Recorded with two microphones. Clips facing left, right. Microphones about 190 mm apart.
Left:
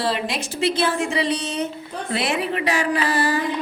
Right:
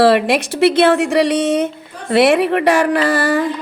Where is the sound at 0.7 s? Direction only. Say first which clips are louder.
Right 8 dB; 65° right (ahead or behind).